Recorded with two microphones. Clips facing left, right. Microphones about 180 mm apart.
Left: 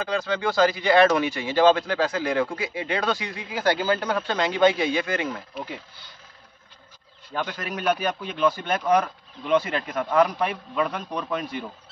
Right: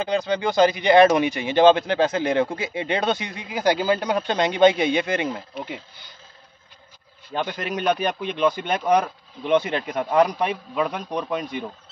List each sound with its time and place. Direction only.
0.0 s speech: 20° right (ahead or behind)
7.4 s speech: 20° right (ahead or behind)